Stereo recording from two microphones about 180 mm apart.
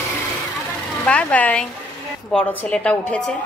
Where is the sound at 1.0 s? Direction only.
10° left (ahead or behind).